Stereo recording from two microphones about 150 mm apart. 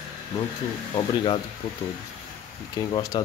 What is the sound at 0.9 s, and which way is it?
Speech, 30° left (ahead or behind).